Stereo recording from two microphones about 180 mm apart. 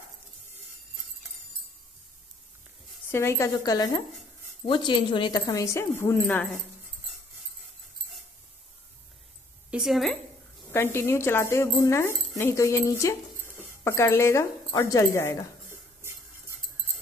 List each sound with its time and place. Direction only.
3.1 s speech: 15° left (ahead or behind)
9.7 s a woman's voice: centre (ahead or behind)
10.7 s speech: 15° left (ahead or behind)